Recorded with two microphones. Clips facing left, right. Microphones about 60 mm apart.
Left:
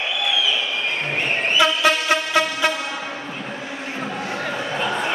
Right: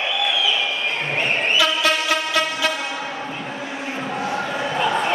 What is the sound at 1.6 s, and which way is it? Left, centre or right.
Train, left.